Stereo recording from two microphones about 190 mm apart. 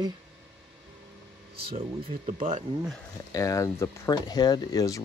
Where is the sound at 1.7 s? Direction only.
30° right (ahead or behind).